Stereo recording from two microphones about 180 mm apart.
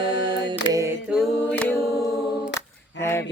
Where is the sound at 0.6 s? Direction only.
15° right (ahead or behind).